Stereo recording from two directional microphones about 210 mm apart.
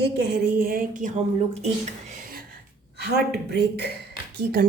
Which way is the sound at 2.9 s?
50° right (ahead or behind).